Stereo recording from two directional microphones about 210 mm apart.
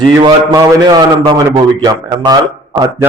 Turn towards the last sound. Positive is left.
turn(degrees=-20)  # may be behind; listen again after turning